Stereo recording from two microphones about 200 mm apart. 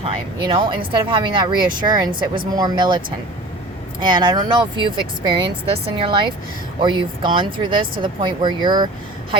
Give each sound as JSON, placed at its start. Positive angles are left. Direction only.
{"t": 0.0, "sound": "speech", "side_deg": -25}
{"t": 4.0, "sound": "speech", "side_deg": -20}